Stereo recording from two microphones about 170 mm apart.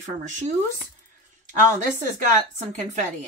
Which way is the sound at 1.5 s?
45° right (ahead or behind).